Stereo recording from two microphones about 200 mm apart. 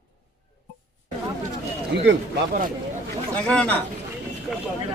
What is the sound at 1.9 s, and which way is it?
Speech, 60° right (ahead or behind).